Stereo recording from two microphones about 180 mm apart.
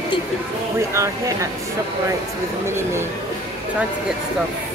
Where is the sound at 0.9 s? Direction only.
15° right (ahead or behind).